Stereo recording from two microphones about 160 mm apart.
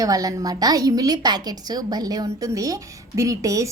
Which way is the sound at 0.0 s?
20° right (ahead or behind).